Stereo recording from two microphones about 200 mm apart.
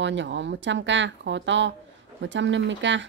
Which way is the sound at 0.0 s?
65° right (ahead or behind).